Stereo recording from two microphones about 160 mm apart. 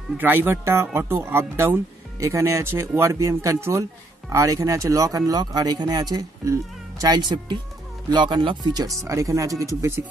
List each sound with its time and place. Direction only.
0.2 s speech: 15° right (ahead or behind)